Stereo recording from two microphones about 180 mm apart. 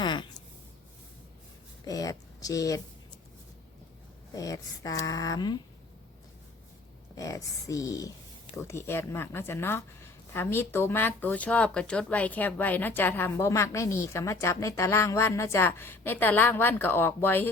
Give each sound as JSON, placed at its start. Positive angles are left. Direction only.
{"t": 0.0, "sound": "a sound", "side_deg": 25}
{"t": 1.8, "sound": "a woman's voice", "side_deg": 20}
{"t": 4.4, "sound": "speech", "side_deg": 20}
{"t": 7.2, "sound": "speech", "side_deg": 20}